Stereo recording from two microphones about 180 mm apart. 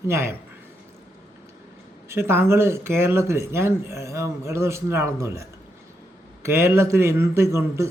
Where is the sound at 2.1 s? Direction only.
15° right (ahead or behind).